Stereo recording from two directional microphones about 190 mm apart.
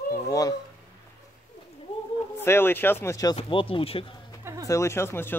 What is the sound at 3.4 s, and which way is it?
Speech, 30° left (ahead or behind).